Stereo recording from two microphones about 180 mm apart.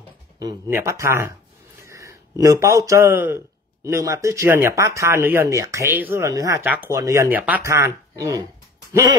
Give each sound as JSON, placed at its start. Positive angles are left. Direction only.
{"t": 0.7, "sound": "a man's voice", "side_deg": -15}